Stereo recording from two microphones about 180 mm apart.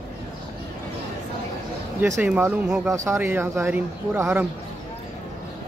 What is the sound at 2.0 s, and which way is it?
Speech, 10° right (ahead or behind).